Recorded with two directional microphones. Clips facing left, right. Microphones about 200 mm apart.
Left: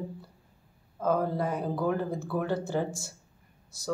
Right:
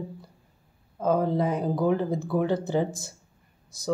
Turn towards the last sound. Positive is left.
turn(degrees=-20)  # may be behind; listen again after turning